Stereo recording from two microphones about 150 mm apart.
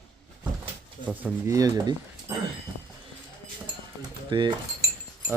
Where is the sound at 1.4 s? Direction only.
20° right (ahead or behind).